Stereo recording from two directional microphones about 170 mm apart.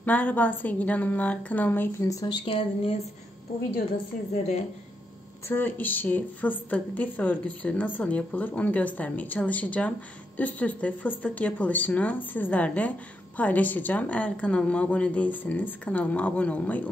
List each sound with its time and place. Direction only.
0.0 s a woman's voice: 10° left (ahead or behind); by 2.9 s 30° left (ahead or behind)
4.3 s a woman's voice: 40° left (ahead or behind)
5.5 s a woman's voice: 10° left (ahead or behind)